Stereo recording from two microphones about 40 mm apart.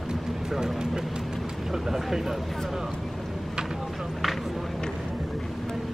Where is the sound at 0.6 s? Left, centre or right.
Centre.